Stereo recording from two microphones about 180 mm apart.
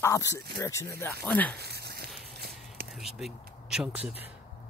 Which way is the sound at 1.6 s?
65° right (ahead or behind).